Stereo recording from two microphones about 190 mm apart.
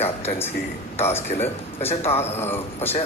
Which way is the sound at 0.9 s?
10° left (ahead or behind).